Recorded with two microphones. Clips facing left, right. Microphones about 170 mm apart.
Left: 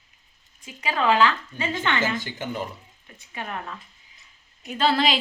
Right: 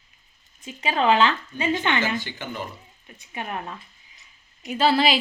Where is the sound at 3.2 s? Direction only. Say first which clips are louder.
Right 2 dB; 20° right (ahead or behind).